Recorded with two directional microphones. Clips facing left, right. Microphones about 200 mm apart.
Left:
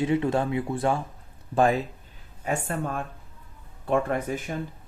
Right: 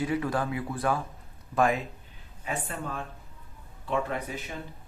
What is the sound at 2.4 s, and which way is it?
A man's voice, 45° left (ahead or behind).